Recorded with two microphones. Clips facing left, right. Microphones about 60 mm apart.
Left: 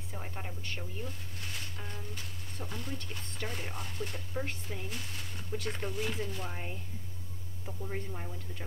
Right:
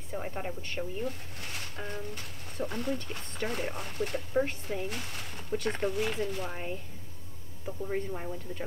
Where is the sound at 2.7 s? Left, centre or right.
Right.